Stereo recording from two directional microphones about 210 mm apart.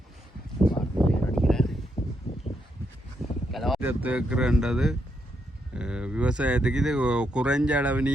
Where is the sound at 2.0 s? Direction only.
30° left (ahead or behind).